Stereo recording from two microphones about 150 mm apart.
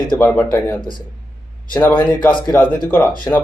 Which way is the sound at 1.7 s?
10° left (ahead or behind).